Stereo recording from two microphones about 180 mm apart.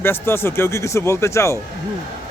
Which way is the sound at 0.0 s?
15° left (ahead or behind).